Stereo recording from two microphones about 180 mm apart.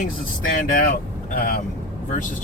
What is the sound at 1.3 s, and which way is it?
Speech, 55° left (ahead or behind).